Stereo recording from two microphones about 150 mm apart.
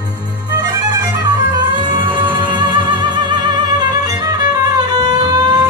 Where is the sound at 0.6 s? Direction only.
25° right (ahead or behind).